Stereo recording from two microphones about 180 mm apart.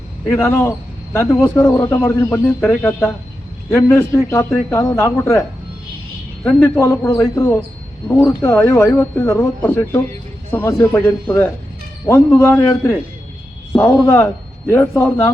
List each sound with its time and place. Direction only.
0.3 s speech: 15° left (ahead or behind)
6.4 s speech: 15° left (ahead or behind)